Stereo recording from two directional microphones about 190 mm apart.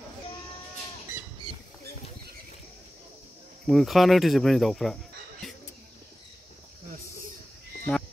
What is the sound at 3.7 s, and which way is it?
Speech, centre (ahead or behind).